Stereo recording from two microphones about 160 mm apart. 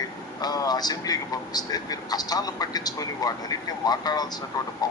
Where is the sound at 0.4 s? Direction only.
25° left (ahead or behind).